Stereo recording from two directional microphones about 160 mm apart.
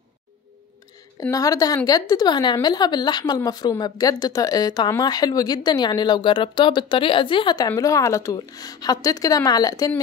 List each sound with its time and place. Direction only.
1.2 s a woman's voice: 20° left (ahead or behind)